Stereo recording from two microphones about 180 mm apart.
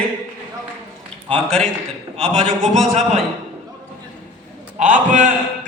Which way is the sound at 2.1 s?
35° right (ahead or behind).